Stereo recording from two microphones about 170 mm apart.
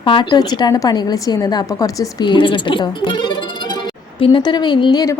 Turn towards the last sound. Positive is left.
turn(degrees=25)  # may be behind; listen again after turning